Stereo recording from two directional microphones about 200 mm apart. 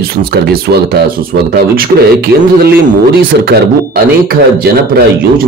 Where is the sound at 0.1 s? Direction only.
50° right (ahead or behind).